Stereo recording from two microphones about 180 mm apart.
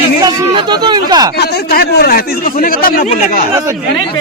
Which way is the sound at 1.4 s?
60° left (ahead or behind).